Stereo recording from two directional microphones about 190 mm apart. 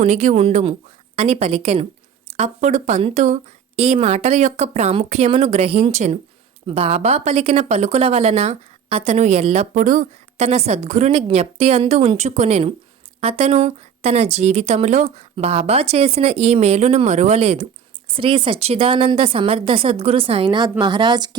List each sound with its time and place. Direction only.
0.0 s a woman's voice: 40° right (ahead or behind); by 21.2 s 20° right (ahead or behind)